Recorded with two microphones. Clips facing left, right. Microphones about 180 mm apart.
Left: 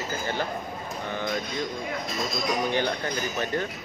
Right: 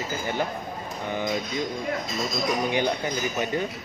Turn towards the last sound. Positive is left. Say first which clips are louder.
# right 2 dB
turn(degrees=-15)  # may be behind; listen again after turning